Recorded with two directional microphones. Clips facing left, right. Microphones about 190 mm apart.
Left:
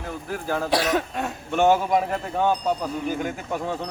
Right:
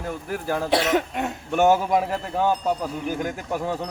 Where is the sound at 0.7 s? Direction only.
20° right (ahead or behind).